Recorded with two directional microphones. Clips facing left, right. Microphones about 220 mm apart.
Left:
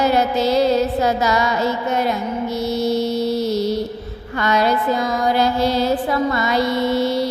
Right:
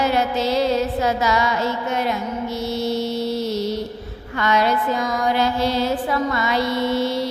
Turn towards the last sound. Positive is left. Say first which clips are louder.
# left 2 dB
turn(degrees=40)  # may be behind; listen again after turning